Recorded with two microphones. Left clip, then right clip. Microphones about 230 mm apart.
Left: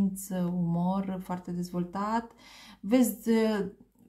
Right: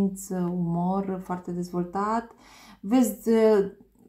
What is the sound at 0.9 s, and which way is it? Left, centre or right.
Speech, left.